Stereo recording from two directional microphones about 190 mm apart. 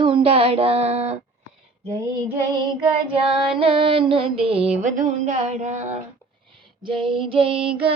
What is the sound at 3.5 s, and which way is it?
Music, 30° right (ahead or behind).